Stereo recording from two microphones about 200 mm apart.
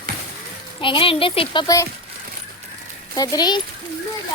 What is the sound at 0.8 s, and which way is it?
Speech, 25° left (ahead or behind).